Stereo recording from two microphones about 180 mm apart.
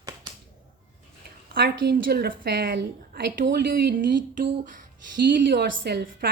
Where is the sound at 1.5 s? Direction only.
65° right (ahead or behind).